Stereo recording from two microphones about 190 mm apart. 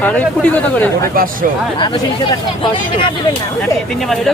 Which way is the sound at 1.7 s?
25° left (ahead or behind).